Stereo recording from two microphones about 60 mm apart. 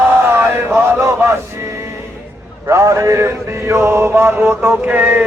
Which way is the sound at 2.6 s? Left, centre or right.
Right.